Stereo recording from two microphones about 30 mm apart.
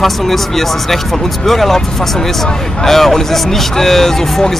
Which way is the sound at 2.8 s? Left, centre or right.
Centre.